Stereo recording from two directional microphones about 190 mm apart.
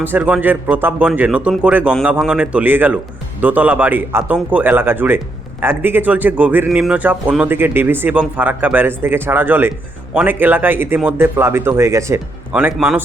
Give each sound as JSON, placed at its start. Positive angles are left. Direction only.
{"t": 0.0, "sound": "a man's voice", "side_deg": -10}